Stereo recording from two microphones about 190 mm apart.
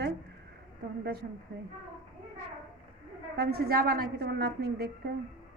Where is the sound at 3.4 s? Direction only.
55° right (ahead or behind).